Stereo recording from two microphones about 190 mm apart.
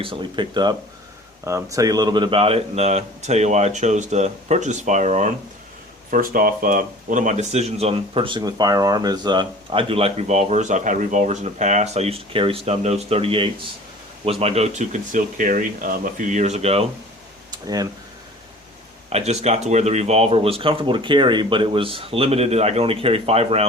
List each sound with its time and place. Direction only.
0.0 s speech: 25° right (ahead or behind)
17.5 s a sound: 20° right (ahead or behind)
19.1 s speech: 35° right (ahead or behind)